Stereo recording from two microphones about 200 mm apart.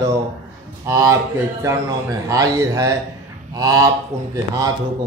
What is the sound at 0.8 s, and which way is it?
A man's voice, 15° right (ahead or behind).